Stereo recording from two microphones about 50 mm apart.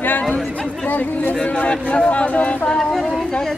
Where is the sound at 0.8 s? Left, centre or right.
Left.